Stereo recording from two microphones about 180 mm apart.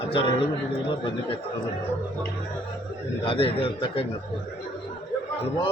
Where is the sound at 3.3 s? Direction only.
30° left (ahead or behind).